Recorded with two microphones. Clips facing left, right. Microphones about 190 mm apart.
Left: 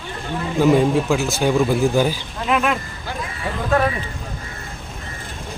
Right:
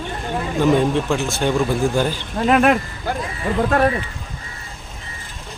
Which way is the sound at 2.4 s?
50° right (ahead or behind).